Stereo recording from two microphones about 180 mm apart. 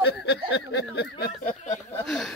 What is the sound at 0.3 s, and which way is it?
Speech, 70° left (ahead or behind).